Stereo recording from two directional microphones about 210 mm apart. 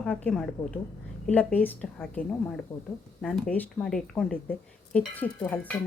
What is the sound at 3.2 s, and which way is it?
A woman's voice, 5° left (ahead or behind).